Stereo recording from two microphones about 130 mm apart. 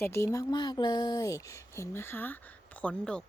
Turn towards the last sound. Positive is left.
turn(degrees=10)  # may be behind; listen again after turning